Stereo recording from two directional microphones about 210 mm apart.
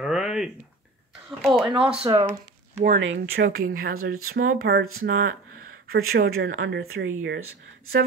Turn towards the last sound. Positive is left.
turn(degrees=-75)  # may be behind; listen again after turning